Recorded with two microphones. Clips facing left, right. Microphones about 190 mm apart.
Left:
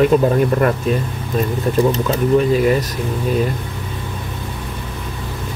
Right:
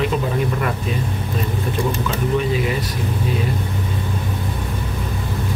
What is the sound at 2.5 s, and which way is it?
Speech, 45° left (ahead or behind).